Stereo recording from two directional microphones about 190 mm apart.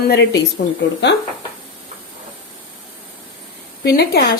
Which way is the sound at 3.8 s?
55° left (ahead or behind).